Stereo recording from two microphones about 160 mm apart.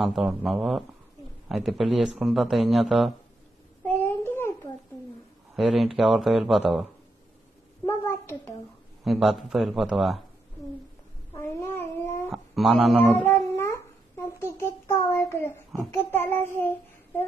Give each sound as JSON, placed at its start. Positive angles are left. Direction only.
{"t": 0.0, "sound": "speech", "side_deg": 0}
{"t": 3.8, "sound": "child singing", "side_deg": 15}
{"t": 5.6, "sound": "speech", "side_deg": 0}
{"t": 7.8, "sound": "a sound", "side_deg": 15}
{"t": 9.0, "sound": "speech", "side_deg": 0}
{"t": 11.3, "sound": "a sound", "side_deg": 15}
{"t": 12.3, "sound": "speech", "side_deg": 0}
{"t": 13.2, "sound": "a sound", "side_deg": 15}
{"t": 16.3, "sound": "child singing", "side_deg": 15}